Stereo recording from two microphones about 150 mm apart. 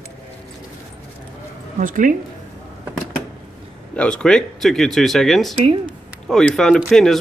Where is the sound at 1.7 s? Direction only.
60° right (ahead or behind).